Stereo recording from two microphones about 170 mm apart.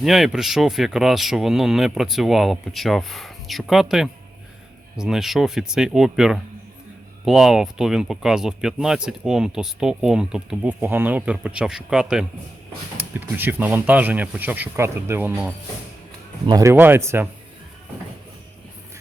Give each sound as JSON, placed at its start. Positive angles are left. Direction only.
{"t": 0.0, "sound": "speech", "side_deg": 0}